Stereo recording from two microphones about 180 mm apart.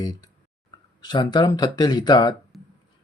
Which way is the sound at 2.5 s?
Centre (ahead or behind).